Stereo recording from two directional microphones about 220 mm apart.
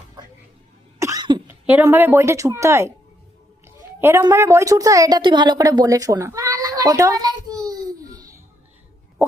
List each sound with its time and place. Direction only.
0.9 s cough: 15° right (ahead or behind)
1.5 s speech: 10° right (ahead or behind)
4.0 s a woman's voice: 10° right (ahead or behind)